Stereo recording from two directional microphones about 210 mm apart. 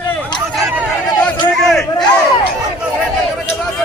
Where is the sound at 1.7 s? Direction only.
Centre (ahead or behind).